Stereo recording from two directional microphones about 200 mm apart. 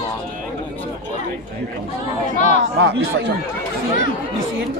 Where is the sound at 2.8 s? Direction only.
60° right (ahead or behind).